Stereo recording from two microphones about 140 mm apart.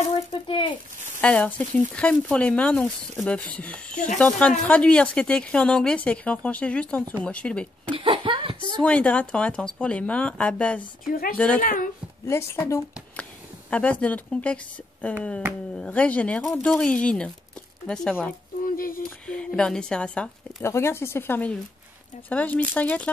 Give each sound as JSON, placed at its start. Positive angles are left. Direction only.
{"t": 0.1, "sound": "speech", "side_deg": 40}
{"t": 1.2, "sound": "speech", "side_deg": 10}
{"t": 7.9, "sound": "chuckle", "side_deg": -40}
{"t": 8.8, "sound": "speech", "side_deg": 10}
{"t": 11.1, "sound": "speech", "side_deg": 90}
{"t": 11.3, "sound": "speech", "side_deg": 10}
{"t": 11.6, "sound": "speech", "side_deg": 75}
{"t": 12.3, "sound": "speech", "side_deg": 20}
{"t": 13.7, "sound": "speech", "side_deg": 10}
{"t": 18.8, "sound": "speech", "side_deg": 90}
{"t": 19.0, "sound": "speech", "side_deg": 5}
{"t": 20.6, "sound": "speech", "side_deg": 20}